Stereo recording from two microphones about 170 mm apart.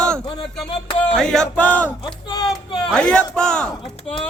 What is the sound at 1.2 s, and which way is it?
Speech, 5° left (ahead or behind).